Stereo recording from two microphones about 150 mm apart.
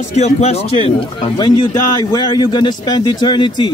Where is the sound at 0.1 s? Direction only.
45° left (ahead or behind).